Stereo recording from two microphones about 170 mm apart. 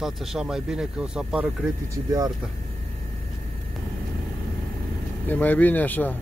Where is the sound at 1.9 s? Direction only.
20° right (ahead or behind).